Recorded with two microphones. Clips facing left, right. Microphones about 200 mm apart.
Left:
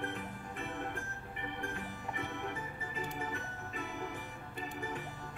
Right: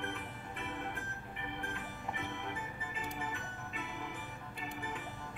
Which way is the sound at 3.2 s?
40° left (ahead or behind).